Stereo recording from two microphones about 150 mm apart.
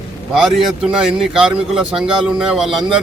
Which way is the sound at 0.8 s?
5° right (ahead or behind).